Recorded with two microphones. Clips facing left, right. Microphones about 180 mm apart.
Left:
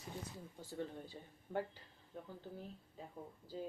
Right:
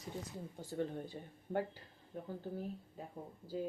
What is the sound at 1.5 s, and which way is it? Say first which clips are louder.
Speech: right 4 dB; 45° right (ahead or behind).